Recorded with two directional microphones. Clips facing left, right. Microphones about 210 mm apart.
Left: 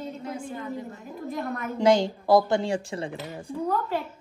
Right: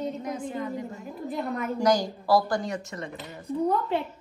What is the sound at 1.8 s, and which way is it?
A woman's voice, 25° left (ahead or behind).